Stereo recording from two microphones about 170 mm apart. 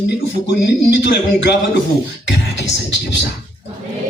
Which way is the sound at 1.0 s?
90° left.